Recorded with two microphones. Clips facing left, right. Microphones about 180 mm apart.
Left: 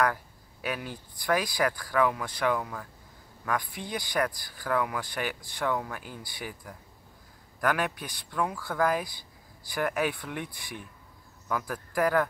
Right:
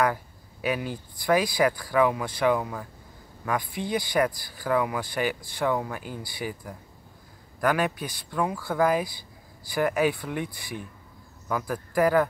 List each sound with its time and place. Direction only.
0.0 s speech: 5° right (ahead or behind)